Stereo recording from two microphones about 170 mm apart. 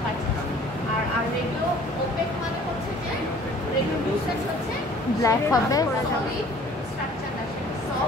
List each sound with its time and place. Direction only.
5.2 s speech: 20° left (ahead or behind)